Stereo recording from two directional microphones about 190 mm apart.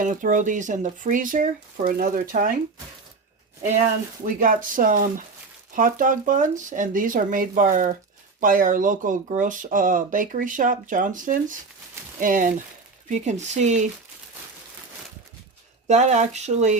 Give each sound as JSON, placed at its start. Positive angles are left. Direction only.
{"t": 0.0, "sound": "speech", "side_deg": -45}
{"t": 4.3, "sound": "speech", "side_deg": -45}
{"t": 15.9, "sound": "speech", "side_deg": -40}